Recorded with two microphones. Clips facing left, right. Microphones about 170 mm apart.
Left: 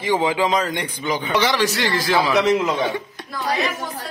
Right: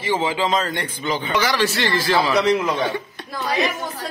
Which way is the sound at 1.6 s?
15° left (ahead or behind).